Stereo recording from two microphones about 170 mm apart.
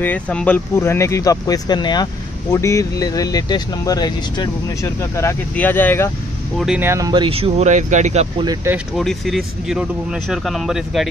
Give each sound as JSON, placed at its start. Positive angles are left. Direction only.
{"t": 0.0, "sound": "speech", "side_deg": 10}
{"t": 6.6, "sound": "speech", "side_deg": -5}
{"t": 6.9, "sound": "speech", "side_deg": -20}
{"t": 8.9, "sound": "speech", "side_deg": 0}